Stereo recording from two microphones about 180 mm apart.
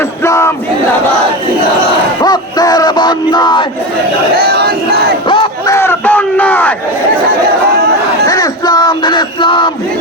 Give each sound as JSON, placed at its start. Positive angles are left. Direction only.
{"t": 0.0, "sound": "battle cry", "side_deg": 15}
{"t": 2.2, "sound": "battle cry", "side_deg": 20}
{"t": 4.4, "sound": "battle cry", "side_deg": -60}
{"t": 5.3, "sound": "battle cry", "side_deg": 25}
{"t": 5.7, "sound": "battle cry", "side_deg": 15}
{"t": 8.3, "sound": "music", "side_deg": 20}